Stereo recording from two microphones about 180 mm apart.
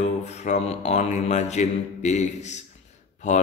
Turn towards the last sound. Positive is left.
turn(degrees=40)  # may be behind; listen again after turning